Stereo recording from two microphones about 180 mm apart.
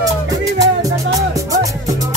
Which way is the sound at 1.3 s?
20° right (ahead or behind).